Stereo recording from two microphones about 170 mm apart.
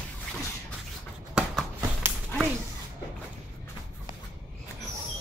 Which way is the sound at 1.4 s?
5° right (ahead or behind).